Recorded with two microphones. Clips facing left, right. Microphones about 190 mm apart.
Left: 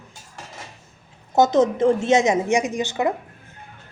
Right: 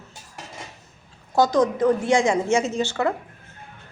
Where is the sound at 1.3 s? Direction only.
25° left (ahead or behind).